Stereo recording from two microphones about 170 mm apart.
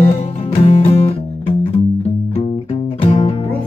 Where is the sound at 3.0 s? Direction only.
35° left (ahead or behind).